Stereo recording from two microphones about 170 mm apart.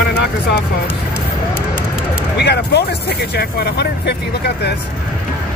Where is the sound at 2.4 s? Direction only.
75° left (ahead or behind).